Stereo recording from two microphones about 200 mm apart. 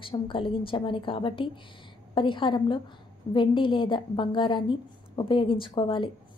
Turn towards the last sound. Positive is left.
turn(degrees=25)  # may be behind; listen again after turning